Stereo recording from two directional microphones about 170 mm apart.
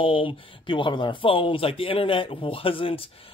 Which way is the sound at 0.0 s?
30° left (ahead or behind).